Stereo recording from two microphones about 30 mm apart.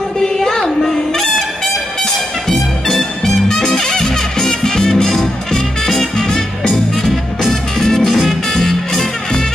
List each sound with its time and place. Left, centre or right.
0.2 s a sound: centre
2.5 s music: centre
6.2 s music: left
7.0 s music: centre
8.1 s music: centre
8.5 s music: centre